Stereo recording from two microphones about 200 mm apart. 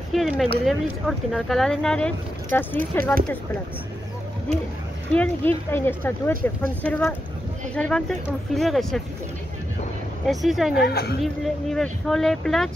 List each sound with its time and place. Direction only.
0.1 s speech: centre (ahead or behind)
5.1 s speech: 5° left (ahead or behind)
10.2 s speech: centre (ahead or behind)
10.7 s a woman's voice: 55° left (ahead or behind)
11.4 s speech: centre (ahead or behind)